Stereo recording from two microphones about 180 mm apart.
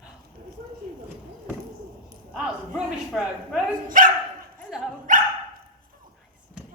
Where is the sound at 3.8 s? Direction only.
50° right (ahead or behind).